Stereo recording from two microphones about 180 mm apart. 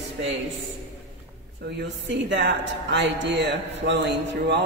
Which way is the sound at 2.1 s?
80° right.